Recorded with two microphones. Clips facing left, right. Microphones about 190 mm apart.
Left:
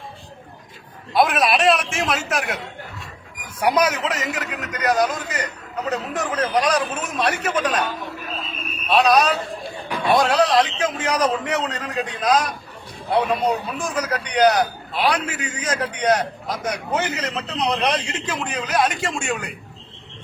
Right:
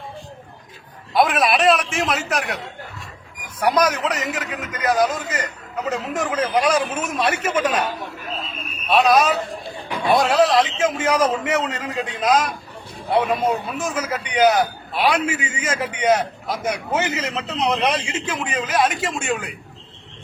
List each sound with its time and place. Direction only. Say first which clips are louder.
1.1 s a man's voice: even; centre (ahead or behind)
3.6 s a man's voice: right 1 dB; 10° left (ahead or behind); by 7.9 s 5° right (ahead or behind)
8.9 s a man's voice: right 1 dB; centre (ahead or behind)